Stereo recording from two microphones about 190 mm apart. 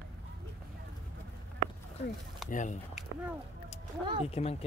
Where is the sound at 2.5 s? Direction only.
40° left (ahead or behind).